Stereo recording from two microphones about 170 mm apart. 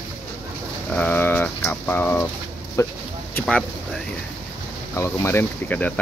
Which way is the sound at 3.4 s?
5° left (ahead or behind).